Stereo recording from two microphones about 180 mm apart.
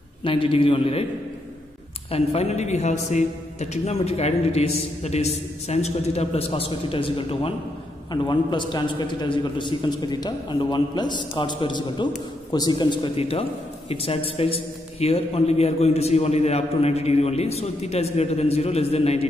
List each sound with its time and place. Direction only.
0.2 s a man's voice: 30° left (ahead or behind)
2.0 s a man's voice: 35° left (ahead or behind)